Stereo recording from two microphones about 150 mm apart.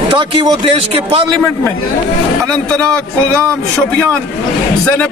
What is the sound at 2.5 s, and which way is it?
Speech, 5° left (ahead or behind).